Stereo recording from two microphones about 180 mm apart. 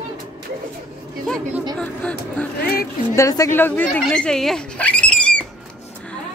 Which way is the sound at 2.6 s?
60° left (ahead or behind).